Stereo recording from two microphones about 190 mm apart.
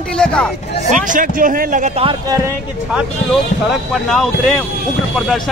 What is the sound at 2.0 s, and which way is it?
Speech, 25° right (ahead or behind).